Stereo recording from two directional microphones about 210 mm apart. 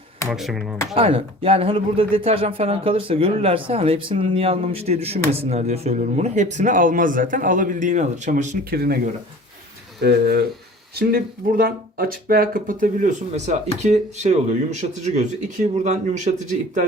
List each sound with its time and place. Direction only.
0.3 s speech: centre (ahead or behind)
0.9 s speech: 25° right (ahead or behind)
8.7 s speech: 50° right (ahead or behind)
10.0 s speech: 50° right (ahead or behind)